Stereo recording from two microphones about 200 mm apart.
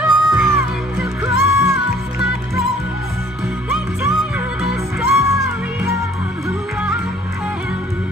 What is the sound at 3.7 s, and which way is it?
Music, centre (ahead or behind).